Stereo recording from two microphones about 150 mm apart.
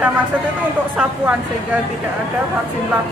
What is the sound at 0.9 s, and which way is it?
Speech, 5° right (ahead or behind).